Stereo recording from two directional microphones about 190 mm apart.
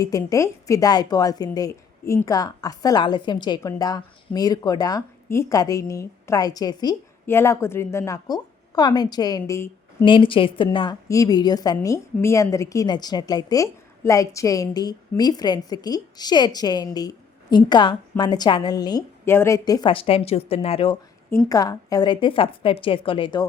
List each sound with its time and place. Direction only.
0.0 s a woman's voice: 20° left (ahead or behind)
21.2 s a woman's voice: 15° left (ahead or behind)